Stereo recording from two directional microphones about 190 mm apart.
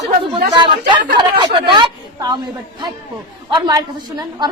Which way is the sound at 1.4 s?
25° right (ahead or behind).